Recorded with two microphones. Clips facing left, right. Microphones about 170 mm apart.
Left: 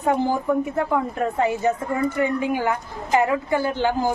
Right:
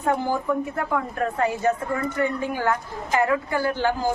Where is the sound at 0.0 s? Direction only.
20° left (ahead or behind).